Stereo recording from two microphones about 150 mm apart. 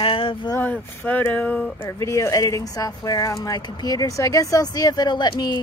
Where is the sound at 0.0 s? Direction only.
35° left (ahead or behind).